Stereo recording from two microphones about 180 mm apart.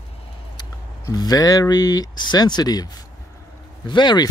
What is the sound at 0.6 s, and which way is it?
Speech, 20° left (ahead or behind).